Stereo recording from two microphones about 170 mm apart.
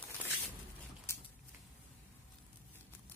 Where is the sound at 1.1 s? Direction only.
15° left (ahead or behind).